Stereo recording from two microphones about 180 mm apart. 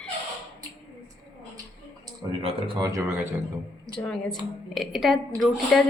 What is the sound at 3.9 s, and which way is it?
A woman's voice, 5° left (ahead or behind).